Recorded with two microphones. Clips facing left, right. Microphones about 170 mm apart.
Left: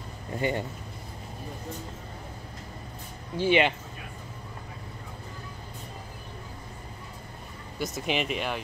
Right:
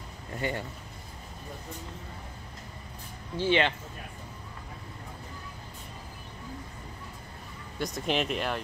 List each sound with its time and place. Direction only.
0.4 s speech: 20° left (ahead or behind)
3.3 s speech: 15° left (ahead or behind)
7.8 s speech: centre (ahead or behind)